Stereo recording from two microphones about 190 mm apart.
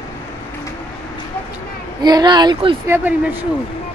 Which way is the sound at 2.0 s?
20° right (ahead or behind).